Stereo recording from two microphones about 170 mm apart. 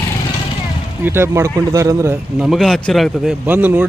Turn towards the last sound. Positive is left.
turn(degrees=-10)  # may be behind; listen again after turning